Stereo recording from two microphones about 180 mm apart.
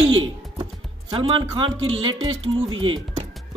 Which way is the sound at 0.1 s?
25° right (ahead or behind).